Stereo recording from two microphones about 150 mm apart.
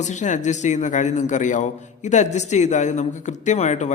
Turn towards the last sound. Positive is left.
turn(degrees=50)  # may be behind; listen again after turning